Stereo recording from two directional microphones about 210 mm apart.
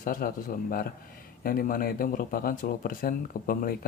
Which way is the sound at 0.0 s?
40° left (ahead or behind).